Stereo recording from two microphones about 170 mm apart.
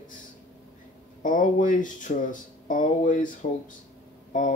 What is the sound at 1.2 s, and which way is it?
Speech, 50° left (ahead or behind).